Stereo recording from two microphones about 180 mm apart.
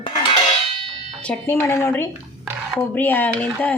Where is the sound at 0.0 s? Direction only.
30° left (ahead or behind).